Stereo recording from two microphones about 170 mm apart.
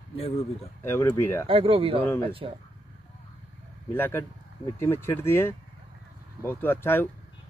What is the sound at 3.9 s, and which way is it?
Speech, 10° left (ahead or behind).